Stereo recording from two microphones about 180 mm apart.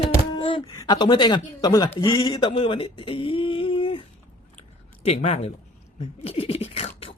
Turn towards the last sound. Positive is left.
turn(degrees=35)  # may be behind; listen again after turning